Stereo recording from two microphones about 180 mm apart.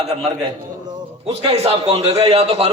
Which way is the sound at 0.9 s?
30° right (ahead or behind).